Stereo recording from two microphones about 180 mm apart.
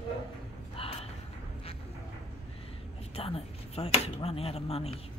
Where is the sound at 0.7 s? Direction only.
35° left (ahead or behind).